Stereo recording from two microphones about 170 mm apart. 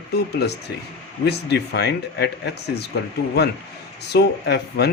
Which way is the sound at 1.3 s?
75° left (ahead or behind).